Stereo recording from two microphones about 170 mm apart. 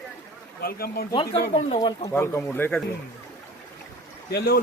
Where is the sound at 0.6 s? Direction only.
65° left (ahead or behind).